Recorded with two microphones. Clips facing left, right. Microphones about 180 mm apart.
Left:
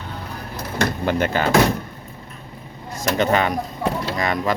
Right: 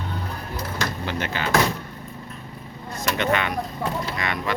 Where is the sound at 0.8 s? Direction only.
50° left (ahead or behind).